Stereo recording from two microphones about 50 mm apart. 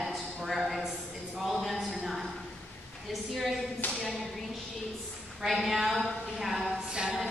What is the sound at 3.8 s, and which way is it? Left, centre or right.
Speech, left.